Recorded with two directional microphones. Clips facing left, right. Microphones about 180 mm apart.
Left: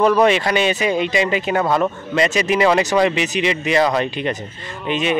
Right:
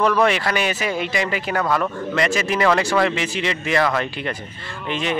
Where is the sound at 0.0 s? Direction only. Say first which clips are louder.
Left 4 dB; 20° left (ahead or behind).